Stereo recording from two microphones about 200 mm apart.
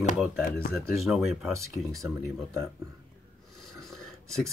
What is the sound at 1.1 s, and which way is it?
Speech, centre (ahead or behind).